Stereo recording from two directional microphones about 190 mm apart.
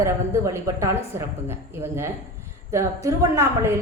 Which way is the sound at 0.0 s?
15° right (ahead or behind).